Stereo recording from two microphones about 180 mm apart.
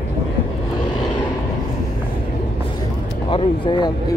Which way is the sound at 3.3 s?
25° left (ahead or behind).